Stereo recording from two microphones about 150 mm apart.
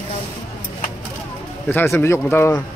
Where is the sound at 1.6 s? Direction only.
15° left (ahead or behind).